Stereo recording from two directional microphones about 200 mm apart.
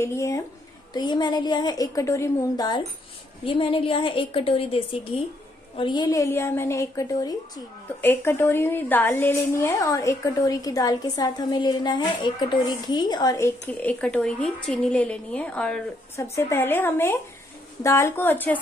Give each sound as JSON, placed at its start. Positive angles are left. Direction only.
{"t": 0.0, "sound": "a woman's voice", "side_deg": 15}
{"t": 13.8, "sound": "a woman's voice", "side_deg": 5}